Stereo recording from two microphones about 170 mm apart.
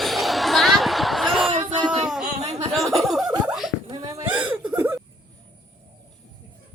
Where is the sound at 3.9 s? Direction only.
25° right (ahead or behind).